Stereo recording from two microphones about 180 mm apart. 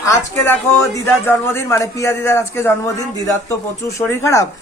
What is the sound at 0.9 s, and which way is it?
A woman's voice, 15° left (ahead or behind).